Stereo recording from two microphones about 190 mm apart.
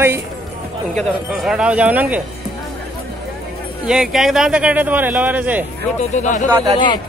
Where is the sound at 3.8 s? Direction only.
5° right (ahead or behind).